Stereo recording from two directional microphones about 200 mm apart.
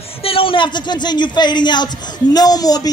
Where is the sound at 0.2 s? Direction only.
30° left (ahead or behind).